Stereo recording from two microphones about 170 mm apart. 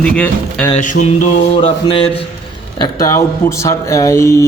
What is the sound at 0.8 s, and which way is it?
Mantra, 45° left (ahead or behind).